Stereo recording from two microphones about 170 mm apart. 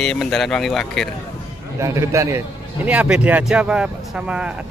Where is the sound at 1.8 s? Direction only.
15° right (ahead or behind).